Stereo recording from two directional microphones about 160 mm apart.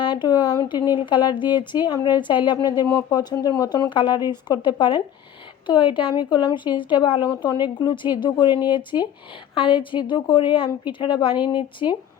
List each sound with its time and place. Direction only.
0.0 s a woman's voice: 30° left (ahead or behind)